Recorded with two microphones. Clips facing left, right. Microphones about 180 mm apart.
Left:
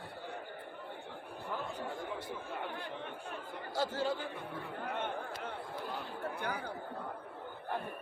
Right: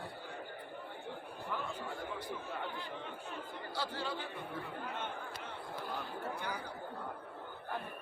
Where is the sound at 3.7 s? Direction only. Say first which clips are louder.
Left 6 dB; 45° left (ahead or behind).